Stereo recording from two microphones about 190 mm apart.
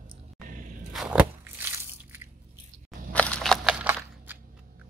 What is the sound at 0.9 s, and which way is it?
Biting, 5° right (ahead or behind).